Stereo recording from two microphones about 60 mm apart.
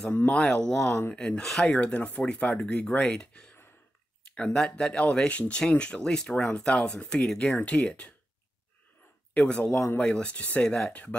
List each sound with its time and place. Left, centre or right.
0.1 s speech: left
2.0 s speech: left; by 7.5 s centre
7.5 s speech: left
9.3 s speech: centre